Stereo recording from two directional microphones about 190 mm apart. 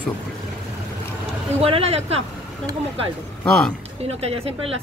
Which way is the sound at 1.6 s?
30° right (ahead or behind).